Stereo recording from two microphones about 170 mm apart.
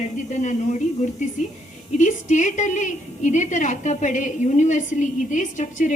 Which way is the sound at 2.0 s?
45° left (ahead or behind).